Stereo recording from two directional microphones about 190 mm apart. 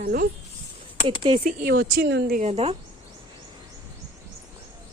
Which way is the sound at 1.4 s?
50° right (ahead or behind).